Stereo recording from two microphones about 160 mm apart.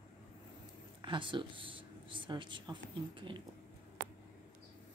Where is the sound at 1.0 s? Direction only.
30° right (ahead or behind).